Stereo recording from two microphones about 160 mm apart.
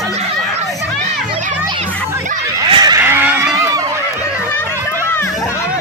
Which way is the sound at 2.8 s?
25° right (ahead or behind).